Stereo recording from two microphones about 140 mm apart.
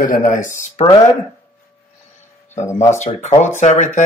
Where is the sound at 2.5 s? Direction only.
55° left (ahead or behind).